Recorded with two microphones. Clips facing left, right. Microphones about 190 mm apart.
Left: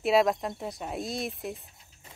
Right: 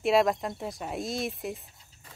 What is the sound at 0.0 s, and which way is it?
Speech, centre (ahead or behind).